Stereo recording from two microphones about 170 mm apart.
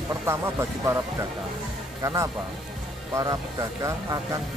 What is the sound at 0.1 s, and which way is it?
Speech, 15° right (ahead or behind).